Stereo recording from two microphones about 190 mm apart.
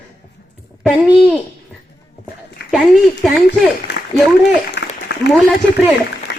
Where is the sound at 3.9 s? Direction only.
65° left (ahead or behind).